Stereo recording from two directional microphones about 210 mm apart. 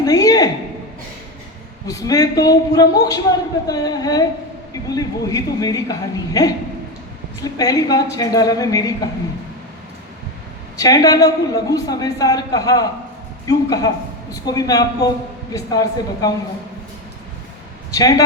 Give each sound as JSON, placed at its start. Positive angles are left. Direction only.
{"t": 0.0, "sound": "a sound", "side_deg": 15}
{"t": 1.9, "sound": "a man's voice", "side_deg": 15}
{"t": 10.8, "sound": "a man's voice", "side_deg": 15}
{"t": 17.9, "sound": "a man's voice", "side_deg": 15}